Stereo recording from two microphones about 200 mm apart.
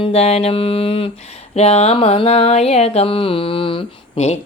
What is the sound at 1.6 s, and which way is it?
Speech, 30° left (ahead or behind).